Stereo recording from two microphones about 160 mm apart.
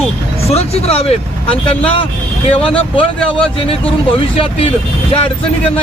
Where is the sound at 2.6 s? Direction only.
35° left (ahead or behind).